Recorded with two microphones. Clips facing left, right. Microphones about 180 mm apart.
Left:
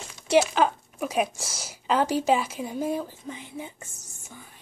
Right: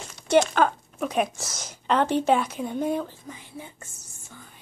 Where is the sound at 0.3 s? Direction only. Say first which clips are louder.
Right 1 dB; 5° left (ahead or behind).